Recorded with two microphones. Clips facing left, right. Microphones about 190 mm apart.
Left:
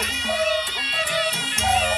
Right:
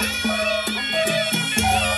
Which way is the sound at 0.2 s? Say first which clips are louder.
Left 1 dB; 65° right (ahead or behind).